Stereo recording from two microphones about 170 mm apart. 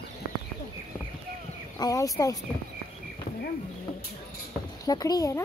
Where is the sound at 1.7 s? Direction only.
20° left (ahead or behind).